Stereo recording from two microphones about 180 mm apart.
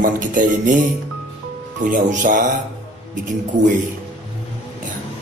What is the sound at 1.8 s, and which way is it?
Speech, 50° right (ahead or behind).